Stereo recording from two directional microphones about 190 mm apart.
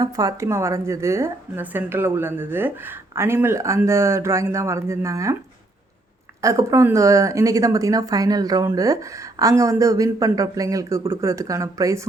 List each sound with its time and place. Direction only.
0.0 s a woman's voice: 20° right (ahead or behind)
6.4 s a woman's voice: 15° right (ahead or behind)